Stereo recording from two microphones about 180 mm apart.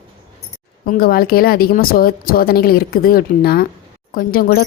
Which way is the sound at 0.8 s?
55° left (ahead or behind).